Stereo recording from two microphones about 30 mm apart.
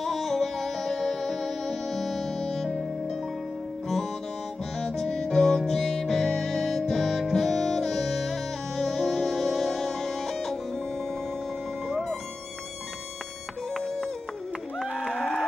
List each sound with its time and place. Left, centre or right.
0.0 s music: centre
2.3 s music: centre
4.7 s music: centre
11.9 s music: centre